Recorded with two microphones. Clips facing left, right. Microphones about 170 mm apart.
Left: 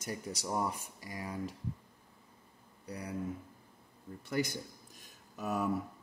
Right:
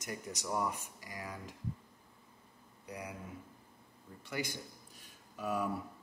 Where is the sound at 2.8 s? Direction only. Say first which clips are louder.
Left 2 dB; 35° left (ahead or behind).